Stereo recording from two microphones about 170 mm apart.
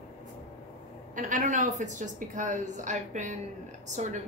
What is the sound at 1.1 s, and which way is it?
A woman's voice, 50° right (ahead or behind).